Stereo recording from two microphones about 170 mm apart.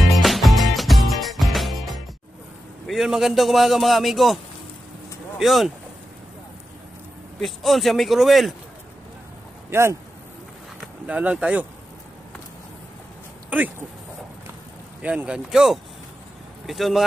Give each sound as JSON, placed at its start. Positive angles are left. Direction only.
{"t": 0.0, "sound": "music", "side_deg": 0}
{"t": 2.9, "sound": "a man's voice", "side_deg": 0}
{"t": 5.4, "sound": "a man's voice", "side_deg": 0}
{"t": 7.3, "sound": "a man's voice", "side_deg": 0}
{"t": 9.7, "sound": "speech", "side_deg": -15}
{"t": 11.1, "sound": "speech", "side_deg": -5}
{"t": 13.5, "sound": "speech", "side_deg": -10}
{"t": 15.0, "sound": "a man's voice", "side_deg": -5}